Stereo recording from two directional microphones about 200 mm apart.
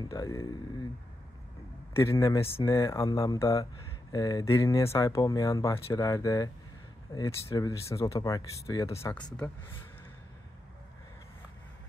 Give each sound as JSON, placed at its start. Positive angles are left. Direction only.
{"t": 0.0, "sound": "speech", "side_deg": 15}
{"t": 2.0, "sound": "speech", "side_deg": 15}